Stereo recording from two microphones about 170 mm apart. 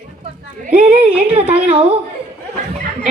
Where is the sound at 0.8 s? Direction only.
35° right (ahead or behind).